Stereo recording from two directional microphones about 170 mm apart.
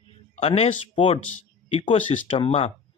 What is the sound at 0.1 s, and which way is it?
Speech, 35° left (ahead or behind).